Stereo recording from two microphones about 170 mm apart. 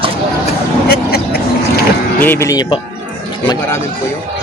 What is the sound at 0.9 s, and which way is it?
Vehicle, 65° left (ahead or behind).